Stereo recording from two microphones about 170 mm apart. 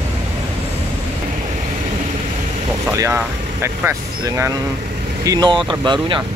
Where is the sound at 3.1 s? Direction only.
10° right (ahead or behind).